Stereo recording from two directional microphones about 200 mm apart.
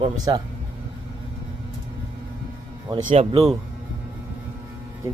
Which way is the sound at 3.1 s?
30° right (ahead or behind).